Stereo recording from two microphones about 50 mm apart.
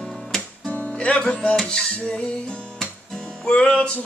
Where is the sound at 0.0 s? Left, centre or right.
Centre.